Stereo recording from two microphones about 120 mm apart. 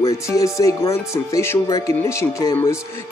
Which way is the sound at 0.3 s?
25° left (ahead or behind).